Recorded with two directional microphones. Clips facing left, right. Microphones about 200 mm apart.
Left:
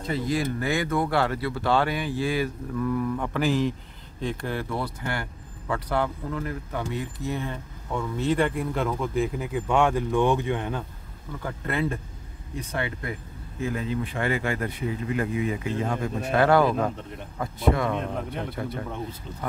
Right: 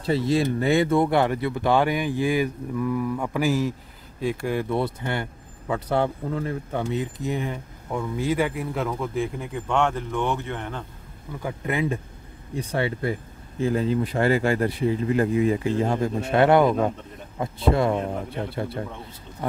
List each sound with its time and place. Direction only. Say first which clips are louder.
0.0 s speech: right 5 dB; 30° right (ahead or behind); by 10.8 s 15° left (ahead or behind)
11.3 s speech: right 2 dB; 15° right (ahead or behind)
12.5 s speech: right 5 dB; 30° right (ahead or behind)